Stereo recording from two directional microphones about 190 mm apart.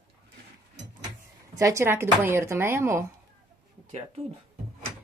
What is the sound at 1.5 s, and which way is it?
Speech, 15° right (ahead or behind).